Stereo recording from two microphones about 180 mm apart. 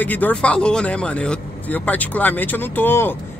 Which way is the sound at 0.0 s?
10° left (ahead or behind).